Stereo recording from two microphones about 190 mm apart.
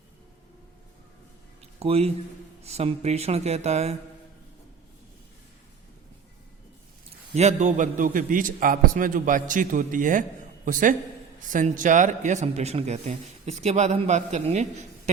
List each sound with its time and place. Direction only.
1.8 s a man's voice: 35° right (ahead or behind)
7.3 s a man's voice: 35° right (ahead or behind)